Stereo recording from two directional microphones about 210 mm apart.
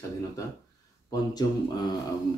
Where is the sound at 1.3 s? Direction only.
20° left (ahead or behind).